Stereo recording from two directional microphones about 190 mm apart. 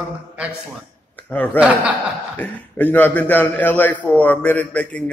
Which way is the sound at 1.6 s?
5° right (ahead or behind).